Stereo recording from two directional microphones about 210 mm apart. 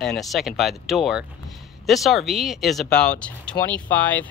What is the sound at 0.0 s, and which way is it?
Speech, centre (ahead or behind).